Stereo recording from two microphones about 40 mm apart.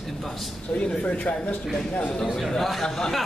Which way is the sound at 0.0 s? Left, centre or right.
Centre.